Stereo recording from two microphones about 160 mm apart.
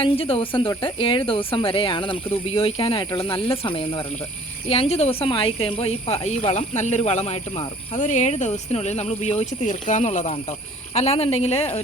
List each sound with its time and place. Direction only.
0.0 s speech: 35° left (ahead or behind)